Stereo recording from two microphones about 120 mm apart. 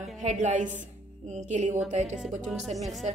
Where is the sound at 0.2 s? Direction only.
85° right.